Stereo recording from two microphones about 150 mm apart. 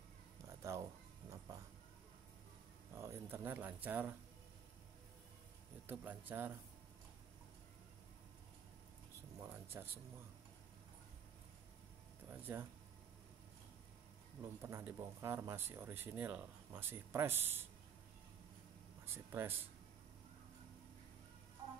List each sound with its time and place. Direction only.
0.5 s a sound: 20° right (ahead or behind)
2.9 s speech: 15° right (ahead or behind)
5.9 s speech: 15° right (ahead or behind)
9.5 s a sound: 15° right (ahead or behind)
12.3 s speech: 15° right (ahead or behind)
14.6 s speech: 15° right (ahead or behind)
19.0 s speech: 15° right (ahead or behind)